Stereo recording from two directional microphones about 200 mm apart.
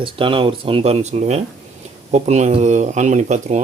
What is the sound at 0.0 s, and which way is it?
Speech, 25° right (ahead or behind).